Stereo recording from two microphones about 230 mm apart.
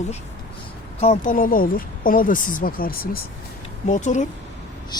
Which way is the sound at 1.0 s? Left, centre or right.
Left.